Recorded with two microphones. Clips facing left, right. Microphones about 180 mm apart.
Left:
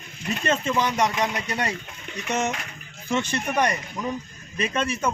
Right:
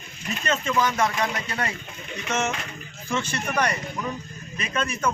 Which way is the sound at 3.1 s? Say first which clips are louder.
Left 2 dB; 20° left (ahead or behind).